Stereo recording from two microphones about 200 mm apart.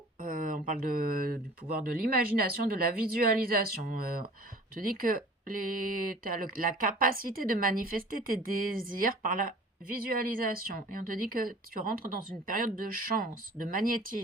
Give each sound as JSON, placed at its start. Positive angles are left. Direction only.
{"t": 0.2, "sound": "a woman's voice", "side_deg": -45}